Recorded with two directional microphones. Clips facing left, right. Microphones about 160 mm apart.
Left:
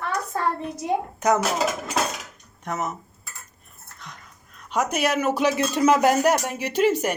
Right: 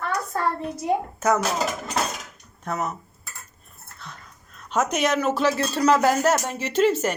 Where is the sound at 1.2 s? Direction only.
15° left (ahead or behind).